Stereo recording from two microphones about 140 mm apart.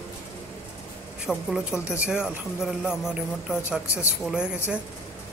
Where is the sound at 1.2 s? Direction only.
5° right (ahead or behind).